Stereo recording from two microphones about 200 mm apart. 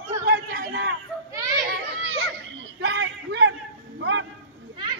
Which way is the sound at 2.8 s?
60° right (ahead or behind).